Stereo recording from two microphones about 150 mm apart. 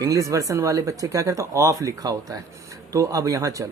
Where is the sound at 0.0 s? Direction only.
20° right (ahead or behind).